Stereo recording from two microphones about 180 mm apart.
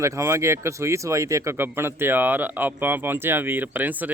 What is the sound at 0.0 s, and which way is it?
Speech, 15° right (ahead or behind).